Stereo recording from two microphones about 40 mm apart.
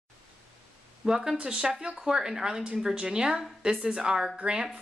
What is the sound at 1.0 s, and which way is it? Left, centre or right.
Speech, centre.